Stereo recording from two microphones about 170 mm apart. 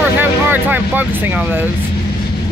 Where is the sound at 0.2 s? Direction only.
10° right (ahead or behind).